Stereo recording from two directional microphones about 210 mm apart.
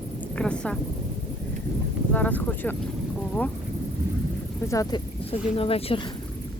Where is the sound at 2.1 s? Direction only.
10° left (ahead or behind).